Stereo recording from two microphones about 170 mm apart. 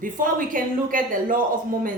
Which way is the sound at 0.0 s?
50° right (ahead or behind).